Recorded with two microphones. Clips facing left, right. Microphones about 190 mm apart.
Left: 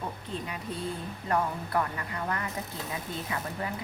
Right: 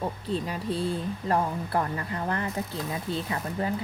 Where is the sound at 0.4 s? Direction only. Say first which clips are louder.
Right 6 dB; 35° right (ahead or behind).